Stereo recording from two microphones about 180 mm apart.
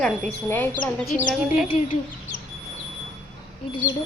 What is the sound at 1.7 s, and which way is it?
Speech, 45° left (ahead or behind).